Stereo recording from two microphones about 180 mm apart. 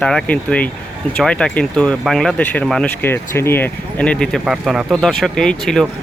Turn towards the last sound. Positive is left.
turn(degrees=5)  # may be behind; listen again after turning